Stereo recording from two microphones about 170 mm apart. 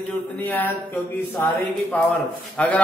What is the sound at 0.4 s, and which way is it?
A man's voice, 10° left (ahead or behind).